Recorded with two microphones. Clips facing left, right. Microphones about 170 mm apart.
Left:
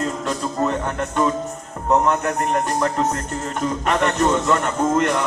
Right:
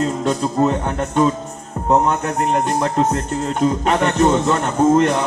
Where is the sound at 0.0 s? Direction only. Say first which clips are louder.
Right 5 dB; 30° right (ahead or behind).